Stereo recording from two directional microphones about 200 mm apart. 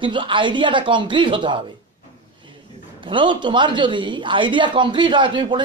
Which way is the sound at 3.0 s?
25° right (ahead or behind).